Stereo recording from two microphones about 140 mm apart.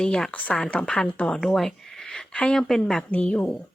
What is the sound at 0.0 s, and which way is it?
A woman's voice, 5° left (ahead or behind).